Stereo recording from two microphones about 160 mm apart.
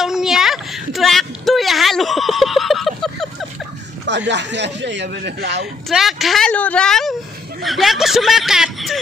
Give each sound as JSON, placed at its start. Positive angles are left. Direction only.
{"t": 0.0, "sound": "a sound", "side_deg": -5}
{"t": 4.3, "sound": "a man's voice", "side_deg": -90}
{"t": 5.9, "sound": "speech", "side_deg": 0}